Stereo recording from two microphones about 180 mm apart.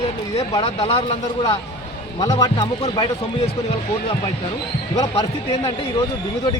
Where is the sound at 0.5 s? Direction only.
30° left (ahead or behind).